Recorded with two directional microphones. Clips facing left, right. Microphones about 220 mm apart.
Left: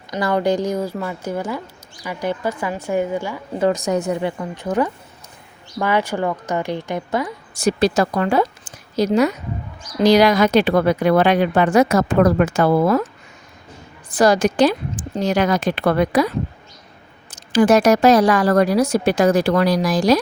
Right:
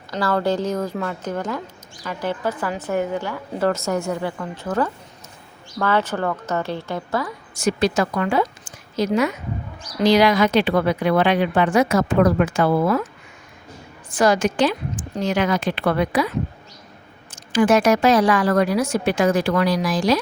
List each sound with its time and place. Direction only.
0.1 s speech: 15° left (ahead or behind)
7.5 s a woman's voice: 35° left (ahead or behind)
14.1 s speech: 35° left (ahead or behind)
17.3 s speech: 40° left (ahead or behind)